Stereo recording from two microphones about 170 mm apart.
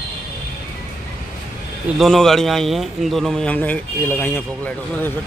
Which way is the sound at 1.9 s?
Centre (ahead or behind).